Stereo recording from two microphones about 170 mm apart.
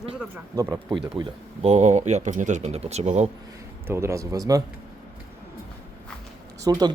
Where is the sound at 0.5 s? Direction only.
20° right (ahead or behind).